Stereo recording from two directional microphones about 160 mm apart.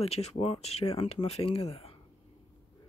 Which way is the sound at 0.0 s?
40° left (ahead or behind).